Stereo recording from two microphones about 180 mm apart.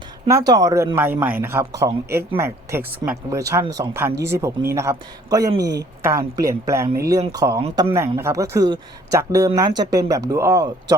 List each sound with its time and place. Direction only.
0.3 s a man's voice: 20° right (ahead or behind)